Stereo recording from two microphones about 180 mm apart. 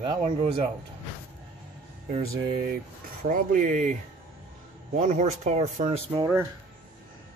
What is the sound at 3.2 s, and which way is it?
Speech, 45° right (ahead or behind).